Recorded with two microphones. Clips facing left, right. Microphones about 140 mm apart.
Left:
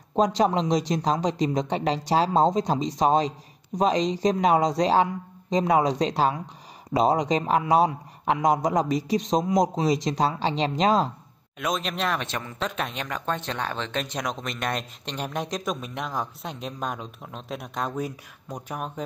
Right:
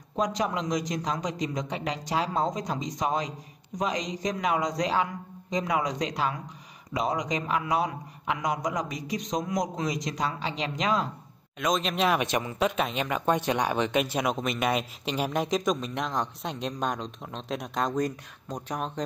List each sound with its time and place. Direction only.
0.1 s speech: 30° left (ahead or behind)
11.6 s speech: centre (ahead or behind)